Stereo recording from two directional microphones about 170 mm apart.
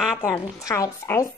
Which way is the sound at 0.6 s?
20° left (ahead or behind).